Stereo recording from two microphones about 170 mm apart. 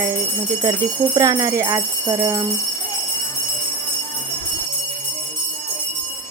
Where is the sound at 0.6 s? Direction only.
25° right (ahead or behind).